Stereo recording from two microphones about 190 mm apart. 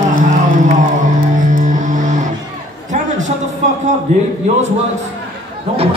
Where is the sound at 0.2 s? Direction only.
40° right (ahead or behind).